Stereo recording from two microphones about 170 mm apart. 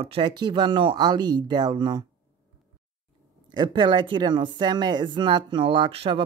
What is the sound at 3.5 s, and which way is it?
Speech, 30° right (ahead or behind).